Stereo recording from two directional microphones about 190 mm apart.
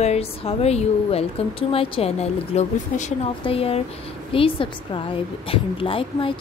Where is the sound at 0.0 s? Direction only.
35° left (ahead or behind).